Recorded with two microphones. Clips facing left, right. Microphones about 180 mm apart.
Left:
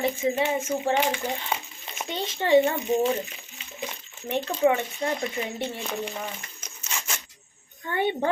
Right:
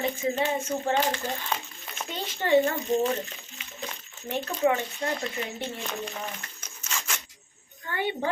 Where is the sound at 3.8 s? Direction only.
15° left (ahead or behind).